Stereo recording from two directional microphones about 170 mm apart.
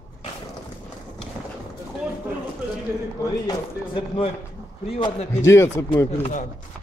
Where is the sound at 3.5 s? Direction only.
30° left (ahead or behind).